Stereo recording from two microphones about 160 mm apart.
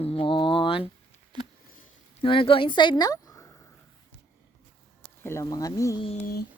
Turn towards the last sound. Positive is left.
turn(degrees=70)  # may be behind; listen again after turning